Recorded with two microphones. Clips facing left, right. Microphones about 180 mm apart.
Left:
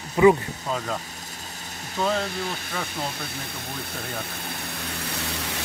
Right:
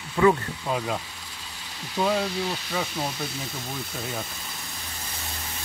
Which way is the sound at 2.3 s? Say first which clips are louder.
Right 2 dB; 50° left (ahead or behind).